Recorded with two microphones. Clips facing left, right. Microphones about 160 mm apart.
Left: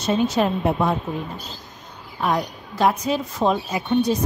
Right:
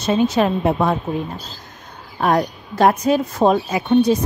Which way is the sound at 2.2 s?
55° right (ahead or behind).